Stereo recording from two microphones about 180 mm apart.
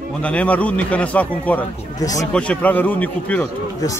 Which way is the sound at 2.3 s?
5° left (ahead or behind).